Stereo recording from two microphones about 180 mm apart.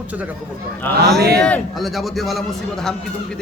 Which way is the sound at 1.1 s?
65° right (ahead or behind).